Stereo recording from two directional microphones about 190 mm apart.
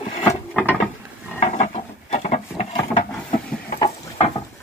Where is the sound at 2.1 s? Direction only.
35° left (ahead or behind).